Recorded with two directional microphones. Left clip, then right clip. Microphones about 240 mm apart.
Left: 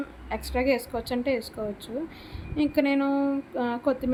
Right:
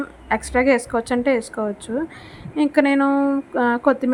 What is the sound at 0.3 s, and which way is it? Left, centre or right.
A woman's voice, right.